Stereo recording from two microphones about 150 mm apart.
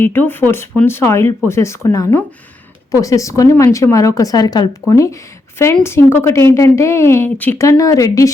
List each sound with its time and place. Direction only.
0.0 s speech: 10° left (ahead or behind)